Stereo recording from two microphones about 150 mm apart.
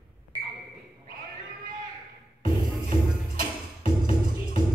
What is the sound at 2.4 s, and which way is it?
Music, 65° right (ahead or behind).